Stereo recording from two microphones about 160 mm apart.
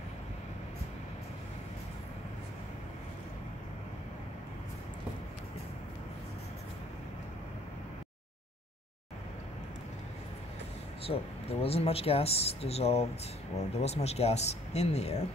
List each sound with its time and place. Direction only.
11.1 s speech: 40° left (ahead or behind)